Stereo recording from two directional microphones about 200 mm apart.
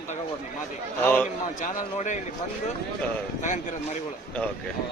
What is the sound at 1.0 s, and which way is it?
Speech, 10° left (ahead or behind).